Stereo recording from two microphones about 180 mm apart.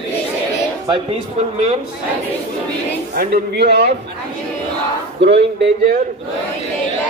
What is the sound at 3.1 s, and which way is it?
Speech, 65° right (ahead or behind).